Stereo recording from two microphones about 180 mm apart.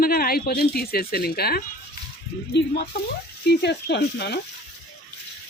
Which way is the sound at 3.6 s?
70° left (ahead or behind).